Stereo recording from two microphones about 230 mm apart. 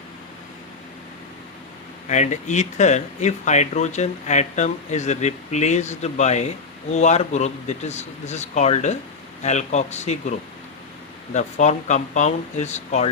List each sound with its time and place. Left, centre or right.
2.0 s speech: left
11.3 s speech: left